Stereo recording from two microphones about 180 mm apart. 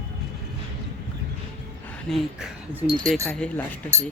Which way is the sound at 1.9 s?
Centre (ahead or behind).